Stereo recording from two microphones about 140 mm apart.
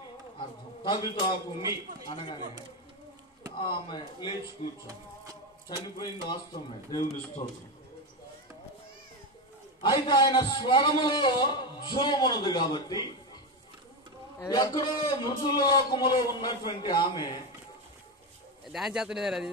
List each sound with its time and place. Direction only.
0.4 s a man's voice: 35° left (ahead or behind)
3.5 s a man's voice: 40° left (ahead or behind)
4.8 s music: 25° right (ahead or behind)
5.9 s a man's voice: 30° left (ahead or behind)
7.4 s a man's voice: 40° left (ahead or behind)
9.8 s a man's voice: 30° left (ahead or behind)
14.4 s a man's voice: 25° left (ahead or behind)
18.7 s a man's voice: 5° right (ahead or behind)